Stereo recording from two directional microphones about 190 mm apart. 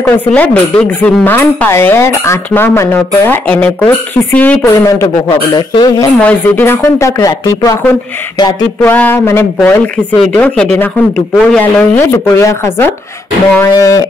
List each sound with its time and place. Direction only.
0.0 s speech: 10° left (ahead or behind)
6.1 s speech: 10° left (ahead or behind)
8.8 s speech: 10° left (ahead or behind)